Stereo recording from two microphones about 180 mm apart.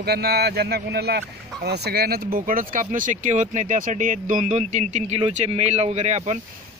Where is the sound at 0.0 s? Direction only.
65° right (ahead or behind).